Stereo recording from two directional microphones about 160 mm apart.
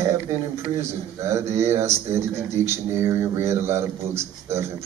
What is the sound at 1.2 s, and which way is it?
A man's voice, 15° right (ahead or behind).